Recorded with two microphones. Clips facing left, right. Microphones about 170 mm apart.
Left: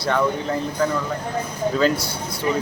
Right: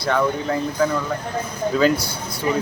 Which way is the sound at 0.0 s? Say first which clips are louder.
Right 1 dB; centre (ahead or behind).